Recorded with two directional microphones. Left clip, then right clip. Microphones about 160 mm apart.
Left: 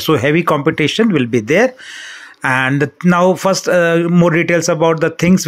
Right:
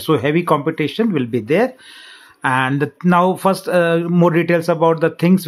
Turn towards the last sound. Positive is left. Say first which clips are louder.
# left 2 dB
turn(degrees=15)  # may be behind; listen again after turning